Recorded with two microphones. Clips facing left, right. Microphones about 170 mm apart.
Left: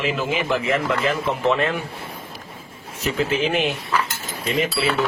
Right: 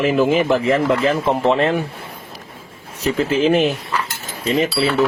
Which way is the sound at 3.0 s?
35° right (ahead or behind).